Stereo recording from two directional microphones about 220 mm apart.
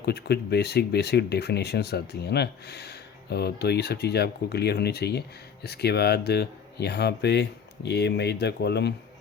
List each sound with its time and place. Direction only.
0.0 s speech: 50° left (ahead or behind)